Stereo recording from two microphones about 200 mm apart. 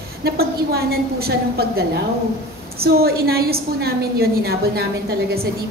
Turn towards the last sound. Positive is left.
turn(degrees=-50)  # may be behind; listen again after turning